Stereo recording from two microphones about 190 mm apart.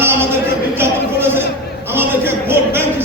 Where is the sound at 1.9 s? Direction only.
10° right (ahead or behind).